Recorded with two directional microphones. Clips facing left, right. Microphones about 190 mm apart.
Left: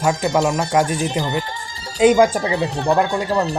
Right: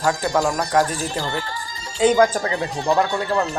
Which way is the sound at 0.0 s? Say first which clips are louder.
Left 2 dB; 20° left (ahead or behind).